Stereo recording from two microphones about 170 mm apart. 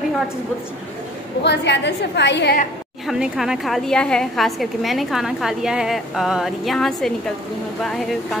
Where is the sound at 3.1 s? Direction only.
5° right (ahead or behind).